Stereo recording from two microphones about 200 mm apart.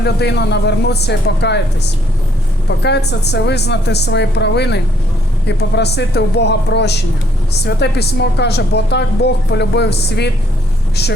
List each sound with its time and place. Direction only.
0.0 s a woman's voice: 55° left (ahead or behind)